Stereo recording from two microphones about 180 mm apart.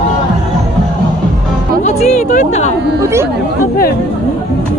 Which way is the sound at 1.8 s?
40° left (ahead or behind).